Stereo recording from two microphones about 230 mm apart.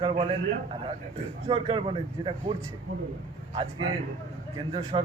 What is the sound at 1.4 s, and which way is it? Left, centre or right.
A man's voice, right.